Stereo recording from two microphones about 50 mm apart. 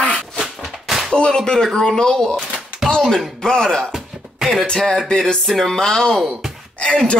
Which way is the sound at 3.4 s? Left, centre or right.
Centre.